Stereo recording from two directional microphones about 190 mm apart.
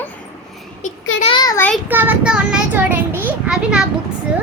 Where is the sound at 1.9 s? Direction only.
10° right (ahead or behind).